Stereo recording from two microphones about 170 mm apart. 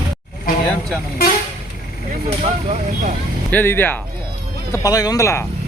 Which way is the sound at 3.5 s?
10° left (ahead or behind).